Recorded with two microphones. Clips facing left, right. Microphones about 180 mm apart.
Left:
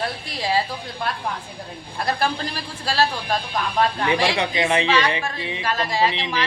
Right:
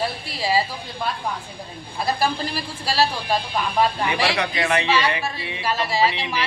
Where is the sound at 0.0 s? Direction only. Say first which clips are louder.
Right 1 dB; 5° right (ahead or behind).